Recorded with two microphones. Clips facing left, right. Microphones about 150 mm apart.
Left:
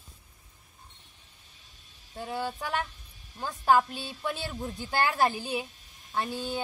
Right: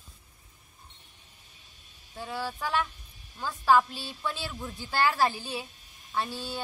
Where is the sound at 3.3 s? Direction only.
45° left (ahead or behind).